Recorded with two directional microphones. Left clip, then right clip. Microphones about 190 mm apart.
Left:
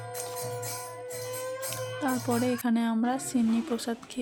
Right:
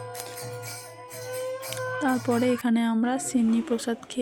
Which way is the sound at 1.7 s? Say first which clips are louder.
Right 6 dB; 15° right (ahead or behind).